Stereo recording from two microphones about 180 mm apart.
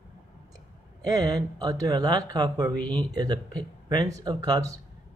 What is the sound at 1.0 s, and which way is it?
Speech, 20° right (ahead or behind).